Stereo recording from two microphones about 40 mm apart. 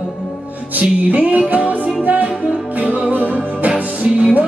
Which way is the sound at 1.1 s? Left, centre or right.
Right.